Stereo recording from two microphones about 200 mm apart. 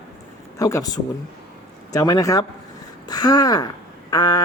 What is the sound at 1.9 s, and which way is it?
Speech, 20° left (ahead or behind).